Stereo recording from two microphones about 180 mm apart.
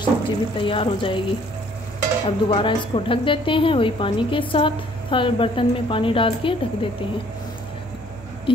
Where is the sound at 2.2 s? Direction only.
30° left (ahead or behind).